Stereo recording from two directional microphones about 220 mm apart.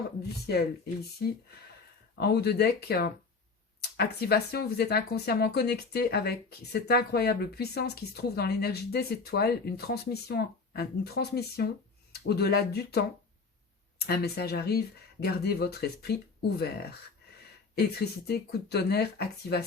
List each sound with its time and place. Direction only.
0.2 s speech: 50° left (ahead or behind)
2.1 s speech: 45° left (ahead or behind)